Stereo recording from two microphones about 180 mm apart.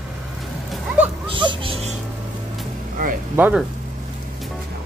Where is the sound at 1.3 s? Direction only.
30° right (ahead or behind).